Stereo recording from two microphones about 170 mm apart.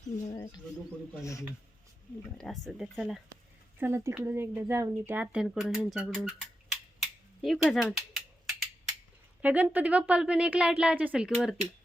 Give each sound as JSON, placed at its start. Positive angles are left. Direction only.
{"t": 0.3, "sound": "a sound", "side_deg": 25}
{"t": 1.2, "sound": "speech", "side_deg": 20}
{"t": 2.4, "sound": "speech", "side_deg": 0}
{"t": 3.8, "sound": "speech", "side_deg": -15}
{"t": 7.4, "sound": "a sound", "side_deg": 0}
{"t": 9.4, "sound": "speech", "side_deg": -10}